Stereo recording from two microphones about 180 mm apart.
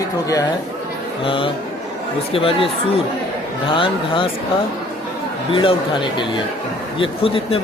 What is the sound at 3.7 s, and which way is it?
Speech, 30° left (ahead or behind).